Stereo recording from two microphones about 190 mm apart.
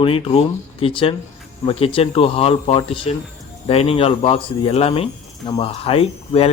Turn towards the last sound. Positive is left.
turn(degrees=30)  # may be behind; listen again after turning